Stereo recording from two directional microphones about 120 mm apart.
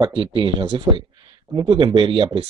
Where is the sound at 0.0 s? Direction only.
40° right (ahead or behind).